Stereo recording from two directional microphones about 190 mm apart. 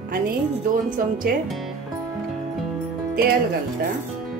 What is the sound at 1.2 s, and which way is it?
Speech, 45° right (ahead or behind).